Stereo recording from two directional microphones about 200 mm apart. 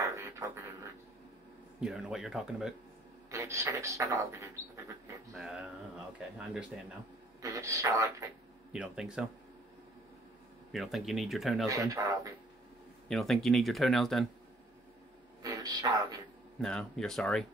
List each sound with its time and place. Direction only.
0.0 s beatboxing: 15° right (ahead or behind)
1.8 s speech: centre (ahead or behind)
3.3 s speech: 15° right (ahead or behind)
5.3 s speech: centre (ahead or behind)
7.4 s speech: 15° right (ahead or behind)
8.7 s speech: 5° right (ahead or behind)
10.7 s speech: centre (ahead or behind)
11.6 s speech: 15° right (ahead or behind)
13.1 s speech: centre (ahead or behind)
15.4 s a sound: 15° right (ahead or behind)
16.6 s speech: 5° left (ahead or behind)